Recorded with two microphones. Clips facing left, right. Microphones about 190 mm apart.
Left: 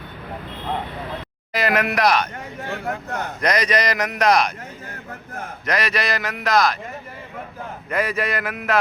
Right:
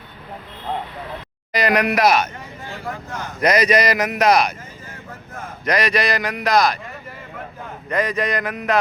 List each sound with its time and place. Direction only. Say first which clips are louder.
1.5 s speech: right 2 dB; 5° left (ahead or behind)
2.6 s speech: left 3 dB; 65° left (ahead or behind)
3.4 s speech: right 4 dB; 5° right (ahead or behind)
5.6 s speech: right 4 dB; centre (ahead or behind)
7.9 s speech: right 2 dB; 5° left (ahead or behind)